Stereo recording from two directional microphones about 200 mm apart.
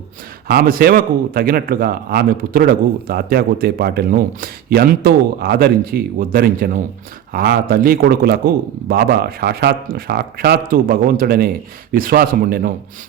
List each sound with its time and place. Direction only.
0.4 s a man's voice: 50° right (ahead or behind)